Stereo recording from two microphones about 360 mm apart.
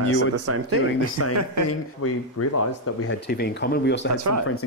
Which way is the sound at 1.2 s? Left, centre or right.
Left.